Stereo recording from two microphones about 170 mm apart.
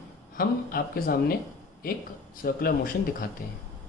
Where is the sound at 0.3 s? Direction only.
60° left (ahead or behind).